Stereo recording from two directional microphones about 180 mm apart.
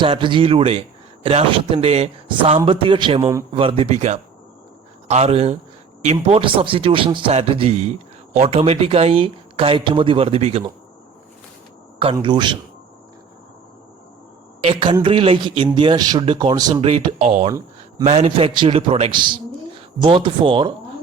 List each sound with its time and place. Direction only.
0.0 s a man's voice: 25° right (ahead or behind)
12.1 s speech: 25° right (ahead or behind)
14.6 s speech: 30° right (ahead or behind)
16.8 s a man's voice: 30° right (ahead or behind)